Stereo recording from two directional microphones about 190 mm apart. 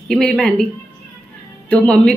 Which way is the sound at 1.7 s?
5° left (ahead or behind).